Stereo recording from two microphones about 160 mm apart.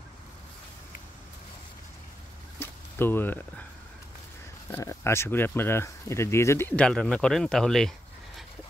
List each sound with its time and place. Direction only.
2.6 s speech: 15° left (ahead or behind)
4.6 s speech: 15° left (ahead or behind)